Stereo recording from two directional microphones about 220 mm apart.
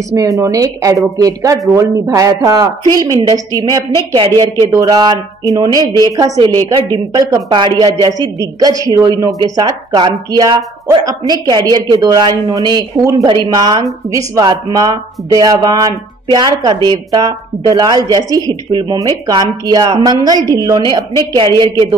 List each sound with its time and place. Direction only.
0.4 s speech: 15° right (ahead or behind)